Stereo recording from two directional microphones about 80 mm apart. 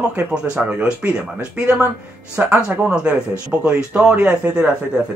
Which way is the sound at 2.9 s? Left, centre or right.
Centre.